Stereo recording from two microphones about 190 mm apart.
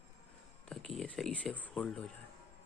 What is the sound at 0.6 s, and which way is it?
Speech, centre (ahead or behind).